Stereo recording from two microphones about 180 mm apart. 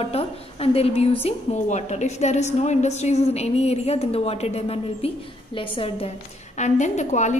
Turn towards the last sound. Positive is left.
turn(degrees=40)  # may be behind; listen again after turning